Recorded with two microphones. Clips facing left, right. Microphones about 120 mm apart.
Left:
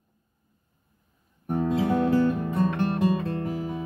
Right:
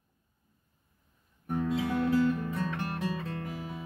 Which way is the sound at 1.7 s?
40° left (ahead or behind).